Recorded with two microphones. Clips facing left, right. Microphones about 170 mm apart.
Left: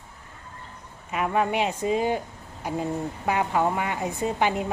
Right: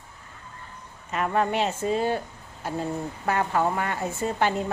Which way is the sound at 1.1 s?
10° left (ahead or behind).